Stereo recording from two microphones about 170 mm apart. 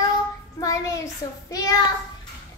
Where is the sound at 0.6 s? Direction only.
20° left (ahead or behind).